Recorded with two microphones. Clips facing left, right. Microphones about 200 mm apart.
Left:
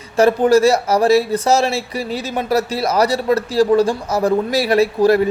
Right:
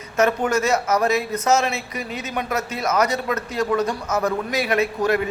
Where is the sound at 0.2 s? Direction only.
35° left (ahead or behind).